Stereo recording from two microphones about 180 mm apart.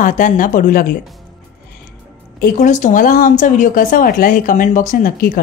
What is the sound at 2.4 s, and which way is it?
A woman's voice, 45° left (ahead or behind).